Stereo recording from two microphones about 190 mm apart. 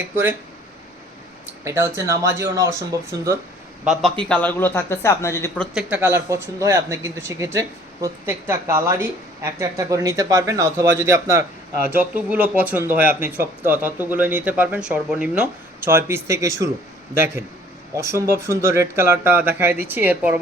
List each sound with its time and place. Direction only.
1.6 s a woman's voice: 15° right (ahead or behind)
4.3 s speech: 10° left (ahead or behind)
5.7 s a woman's voice: 10° right (ahead or behind)